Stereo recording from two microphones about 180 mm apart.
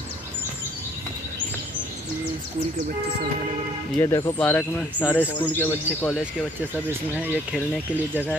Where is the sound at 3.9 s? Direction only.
15° left (ahead or behind).